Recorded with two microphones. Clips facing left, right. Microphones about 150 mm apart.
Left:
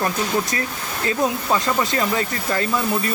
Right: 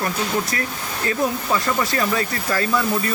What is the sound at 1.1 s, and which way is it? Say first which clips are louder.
Speech: left 1 dB; 25° left (ahead or behind).